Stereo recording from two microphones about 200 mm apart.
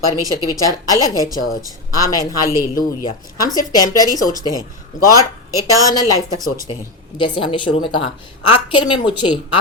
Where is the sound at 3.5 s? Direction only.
20° left (ahead or behind).